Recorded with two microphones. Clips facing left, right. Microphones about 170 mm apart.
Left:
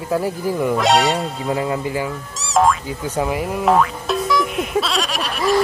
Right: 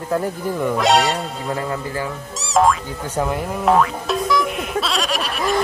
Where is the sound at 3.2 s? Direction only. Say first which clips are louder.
Left 1 dB; 5° left (ahead or behind).